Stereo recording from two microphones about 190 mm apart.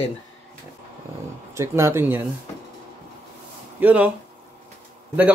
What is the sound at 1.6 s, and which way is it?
Speech, 15° right (ahead or behind).